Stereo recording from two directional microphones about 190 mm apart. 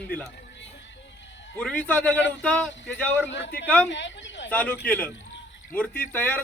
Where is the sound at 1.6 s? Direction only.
10° left (ahead or behind).